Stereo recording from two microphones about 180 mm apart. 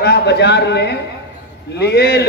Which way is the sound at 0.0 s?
65° left (ahead or behind).